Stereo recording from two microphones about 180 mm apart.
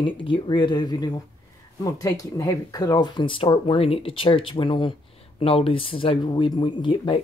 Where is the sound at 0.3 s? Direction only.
25° left (ahead or behind).